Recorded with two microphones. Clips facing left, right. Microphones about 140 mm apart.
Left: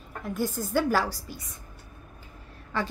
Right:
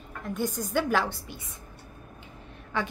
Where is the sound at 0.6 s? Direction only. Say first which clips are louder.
Left 1 dB; centre (ahead or behind).